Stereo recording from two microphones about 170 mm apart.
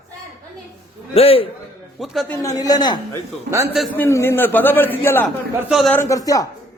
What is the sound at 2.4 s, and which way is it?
A man's voice, 20° left (ahead or behind).